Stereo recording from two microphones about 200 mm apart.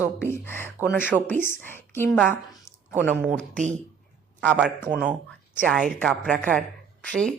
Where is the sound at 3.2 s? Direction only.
5° right (ahead or behind).